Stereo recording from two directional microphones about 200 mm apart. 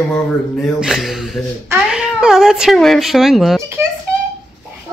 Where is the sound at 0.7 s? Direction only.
Centre (ahead or behind).